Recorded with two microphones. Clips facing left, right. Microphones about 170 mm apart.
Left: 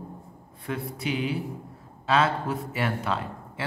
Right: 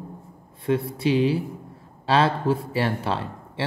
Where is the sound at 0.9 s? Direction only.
30° right (ahead or behind).